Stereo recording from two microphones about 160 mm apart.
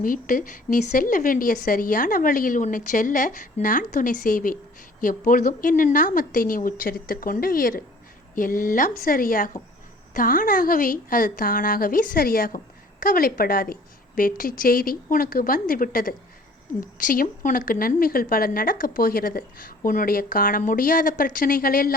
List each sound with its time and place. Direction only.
0.0 s speech: 60° left (ahead or behind)